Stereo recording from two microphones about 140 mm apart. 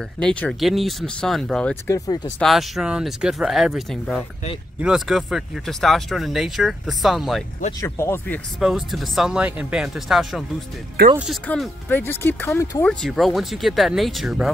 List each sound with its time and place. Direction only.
0.2 s speech: 5° left (ahead or behind)
1.9 s speech: 25° left (ahead or behind)
2.4 s speech: centre (ahead or behind)
7.8 s speech: 20° left (ahead or behind)
8.5 s speech: centre (ahead or behind)
11.4 s speech: 10° left (ahead or behind)
12.8 s speech: 5° left (ahead or behind)